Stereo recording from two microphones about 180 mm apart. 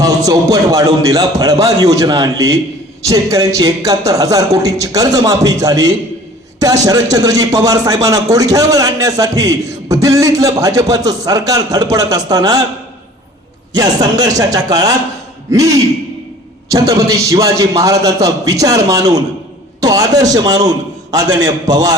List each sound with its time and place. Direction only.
0.0 s speech: 20° right (ahead or behind)
13.7 s a man's voice: 20° right (ahead or behind)